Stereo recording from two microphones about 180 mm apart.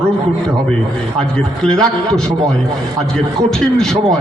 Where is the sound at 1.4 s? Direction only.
5° left (ahead or behind).